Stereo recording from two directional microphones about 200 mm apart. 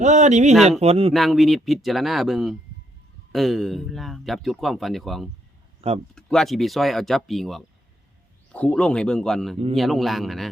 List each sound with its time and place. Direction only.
0.0 s speech: 35° right (ahead or behind)
1.1 s speech: centre (ahead or behind)
5.8 s speech: 30° right (ahead or behind)
6.1 s speech: 5° left (ahead or behind)